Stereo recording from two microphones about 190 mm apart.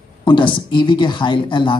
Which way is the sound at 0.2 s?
25° left (ahead or behind).